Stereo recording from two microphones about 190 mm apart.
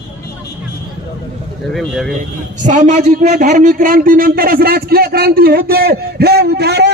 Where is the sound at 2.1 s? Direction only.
40° right (ahead or behind).